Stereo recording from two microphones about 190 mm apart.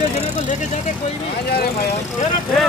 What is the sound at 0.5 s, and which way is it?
Speech, 40° left (ahead or behind).